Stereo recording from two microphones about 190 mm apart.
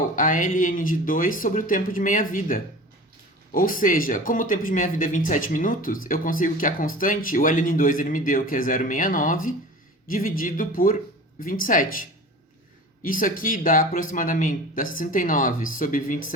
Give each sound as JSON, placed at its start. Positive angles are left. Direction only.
{"t": 0.2, "sound": "speech", "side_deg": 45}
{"t": 13.0, "sound": "speech", "side_deg": 45}